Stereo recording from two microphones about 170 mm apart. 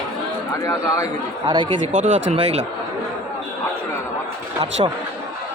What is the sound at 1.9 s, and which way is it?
Speech, 45° right (ahead or behind).